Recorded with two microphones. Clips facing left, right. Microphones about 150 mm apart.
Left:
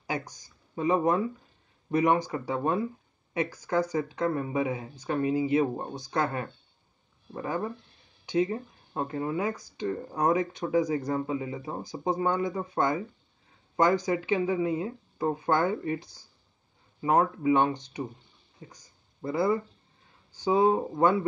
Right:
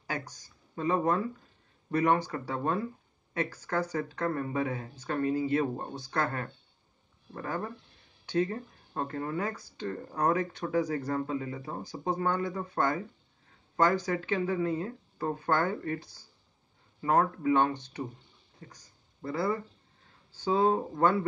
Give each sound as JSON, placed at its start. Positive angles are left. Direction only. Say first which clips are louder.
{"t": 0.0, "sound": "speech", "louder": "left 4 dB", "side_deg": 15}